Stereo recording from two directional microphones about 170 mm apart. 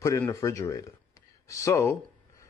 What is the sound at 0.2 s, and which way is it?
A man's voice, 20° left (ahead or behind).